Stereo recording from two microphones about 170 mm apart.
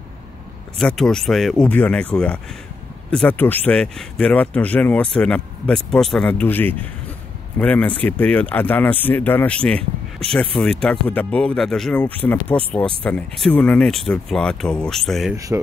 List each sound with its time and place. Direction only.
0.7 s speech: 5° left (ahead or behind)
15.3 s speech: 20° right (ahead or behind)